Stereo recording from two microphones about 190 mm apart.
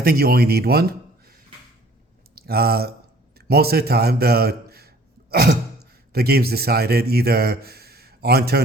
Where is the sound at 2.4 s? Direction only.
55° right (ahead or behind).